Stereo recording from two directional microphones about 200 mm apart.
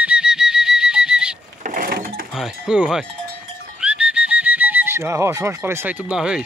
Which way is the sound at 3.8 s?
5° right (ahead or behind).